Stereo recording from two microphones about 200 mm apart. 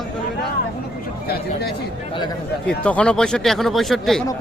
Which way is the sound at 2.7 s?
5° left (ahead or behind).